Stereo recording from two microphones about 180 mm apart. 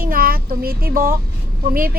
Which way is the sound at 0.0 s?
55° right (ahead or behind).